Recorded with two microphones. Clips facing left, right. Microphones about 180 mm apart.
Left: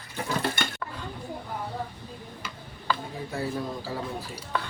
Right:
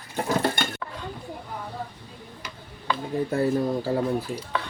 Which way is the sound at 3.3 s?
55° right (ahead or behind).